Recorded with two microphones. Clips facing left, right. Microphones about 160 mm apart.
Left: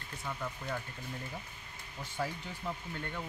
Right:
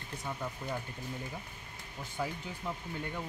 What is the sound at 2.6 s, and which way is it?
Speech, 5° right (ahead or behind).